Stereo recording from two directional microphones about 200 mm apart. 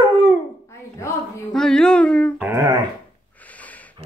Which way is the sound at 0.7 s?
15° left (ahead or behind).